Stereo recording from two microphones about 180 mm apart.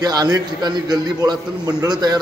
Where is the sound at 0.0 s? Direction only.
20° right (ahead or behind).